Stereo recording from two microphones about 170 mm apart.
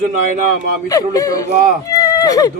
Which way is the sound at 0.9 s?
20° left (ahead or behind).